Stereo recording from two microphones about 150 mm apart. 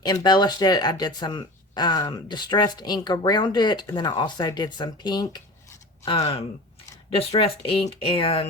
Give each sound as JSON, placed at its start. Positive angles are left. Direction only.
{"t": 0.0, "sound": "speech", "side_deg": 30}
{"t": 7.2, "sound": "speech", "side_deg": 40}